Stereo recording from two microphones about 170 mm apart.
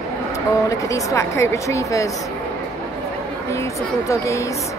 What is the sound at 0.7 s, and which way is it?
Speech, 20° left (ahead or behind).